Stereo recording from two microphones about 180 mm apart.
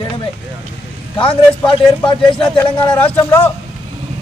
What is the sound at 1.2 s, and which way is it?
A man's voice, 25° left (ahead or behind).